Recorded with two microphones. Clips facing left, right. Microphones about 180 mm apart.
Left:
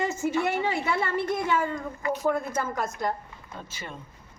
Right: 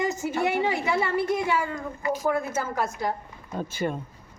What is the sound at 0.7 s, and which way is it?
A woman's voice, 15° right (ahead or behind).